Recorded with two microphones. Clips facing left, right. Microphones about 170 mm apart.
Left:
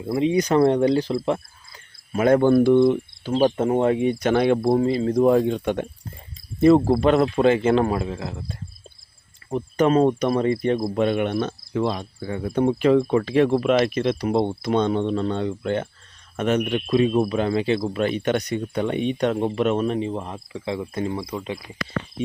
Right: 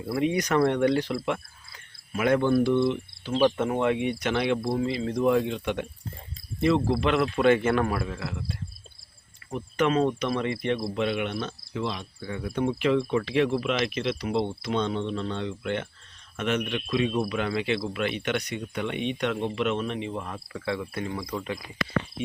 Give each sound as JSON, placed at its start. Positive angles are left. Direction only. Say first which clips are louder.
{"t": 0.0, "sound": "speech", "louder": "left 5 dB", "side_deg": 25}
{"t": 2.5, "sound": "cricket", "louder": "left 7 dB", "side_deg": 50}
{"t": 6.6, "sound": "speech", "louder": "left 8 dB", "side_deg": 45}
{"t": 9.5, "sound": "cricket", "louder": "left 6 dB", "side_deg": 35}
{"t": 16.4, "sound": "speech", "louder": "left 6 dB", "side_deg": 40}